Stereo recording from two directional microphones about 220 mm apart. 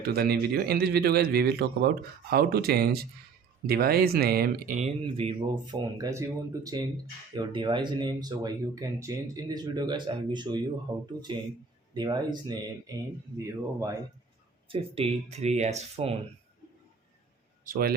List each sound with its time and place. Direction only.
0.0 s a man's voice: 45° right (ahead or behind); by 12.5 s 20° right (ahead or behind)
14.7 s speech: 25° right (ahead or behind)
17.7 s a man's voice: 45° right (ahead or behind)